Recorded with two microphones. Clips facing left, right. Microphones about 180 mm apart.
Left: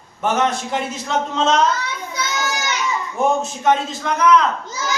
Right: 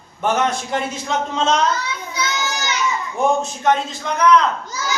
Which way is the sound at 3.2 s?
5° left (ahead or behind).